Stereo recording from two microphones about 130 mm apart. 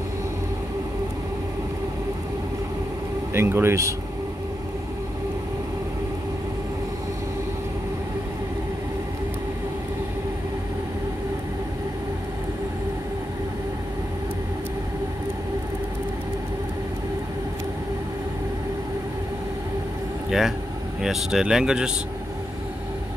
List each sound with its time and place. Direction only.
3.3 s speech: 20° right (ahead or behind)
20.2 s vehicle: 5° right (ahead or behind)
21.0 s speech: 5° right (ahead or behind)